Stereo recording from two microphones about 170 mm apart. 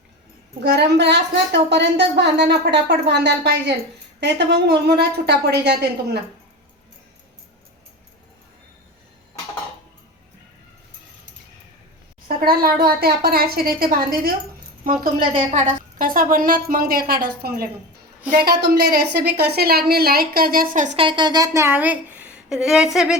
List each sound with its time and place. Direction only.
0.6 s a woman's voice: 80° right
12.5 s a woman's voice: 60° right (ahead or behind)
15.5 s a woman's voice: 50° right (ahead or behind)
21.0 s speech: 25° right (ahead or behind); by 23.1 s 5° right (ahead or behind)